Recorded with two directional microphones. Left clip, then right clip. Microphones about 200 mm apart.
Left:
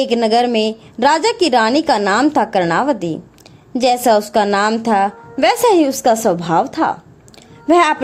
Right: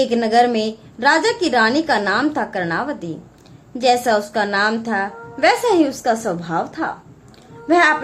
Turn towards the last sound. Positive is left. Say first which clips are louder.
# left 2 dB
turn(degrees=40)  # may be behind; listen again after turning